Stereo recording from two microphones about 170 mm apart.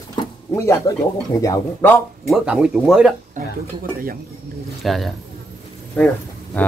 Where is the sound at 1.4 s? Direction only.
15° left (ahead or behind).